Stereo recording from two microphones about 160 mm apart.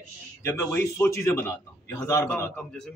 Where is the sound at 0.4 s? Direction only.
15° left (ahead or behind).